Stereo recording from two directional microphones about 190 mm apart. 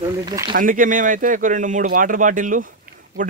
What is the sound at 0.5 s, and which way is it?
Speech, 45° right (ahead or behind).